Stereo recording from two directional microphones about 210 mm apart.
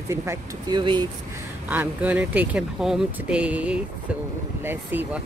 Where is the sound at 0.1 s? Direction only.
15° right (ahead or behind).